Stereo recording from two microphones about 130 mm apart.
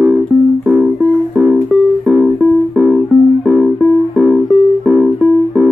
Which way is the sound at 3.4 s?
Centre (ahead or behind).